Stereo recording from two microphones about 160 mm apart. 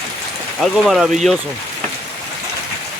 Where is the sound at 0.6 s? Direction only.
Centre (ahead or behind).